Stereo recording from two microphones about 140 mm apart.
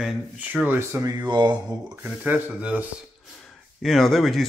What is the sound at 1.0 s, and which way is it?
Speech, 25° right (ahead or behind).